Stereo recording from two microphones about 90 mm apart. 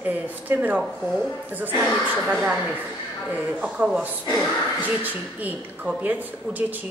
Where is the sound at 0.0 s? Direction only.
20° right (ahead or behind).